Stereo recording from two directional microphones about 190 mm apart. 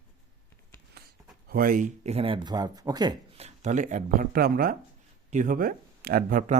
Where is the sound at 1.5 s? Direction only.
45° right (ahead or behind); by 3.1 s 20° right (ahead or behind).